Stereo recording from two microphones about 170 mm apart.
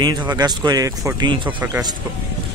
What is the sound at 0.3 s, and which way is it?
Speech, 25° right (ahead or behind).